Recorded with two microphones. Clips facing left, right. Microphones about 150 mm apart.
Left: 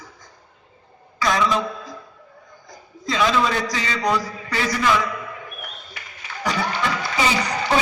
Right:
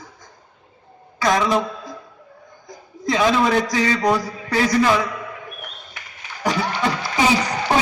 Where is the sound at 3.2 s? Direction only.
50° right (ahead or behind).